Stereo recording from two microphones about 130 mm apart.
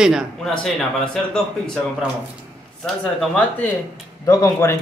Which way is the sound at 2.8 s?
5° left (ahead or behind).